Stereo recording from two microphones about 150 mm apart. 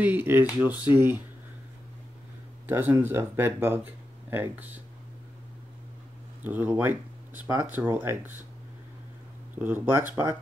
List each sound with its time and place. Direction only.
0.0 s speech: 15° right (ahead or behind)
2.6 s speech: 15° right (ahead or behind)
6.4 s speech: 10° right (ahead or behind)
9.6 s speech: 15° right (ahead or behind)